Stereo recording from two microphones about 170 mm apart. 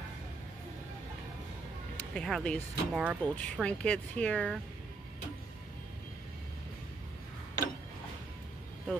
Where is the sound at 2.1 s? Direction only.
5° left (ahead or behind).